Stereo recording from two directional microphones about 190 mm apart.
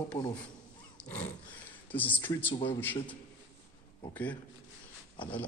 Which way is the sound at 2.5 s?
30° left (ahead or behind).